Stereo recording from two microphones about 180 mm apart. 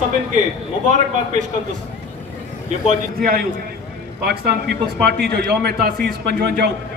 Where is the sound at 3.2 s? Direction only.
55° right (ahead or behind).